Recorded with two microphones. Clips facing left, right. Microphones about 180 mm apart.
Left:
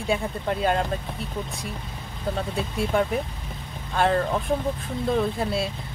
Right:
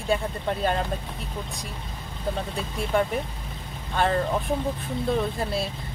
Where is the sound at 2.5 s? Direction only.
Centre (ahead or behind).